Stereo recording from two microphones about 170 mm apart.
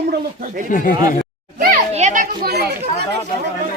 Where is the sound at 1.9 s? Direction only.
45° right (ahead or behind); by 2.7 s 65° right (ahead or behind).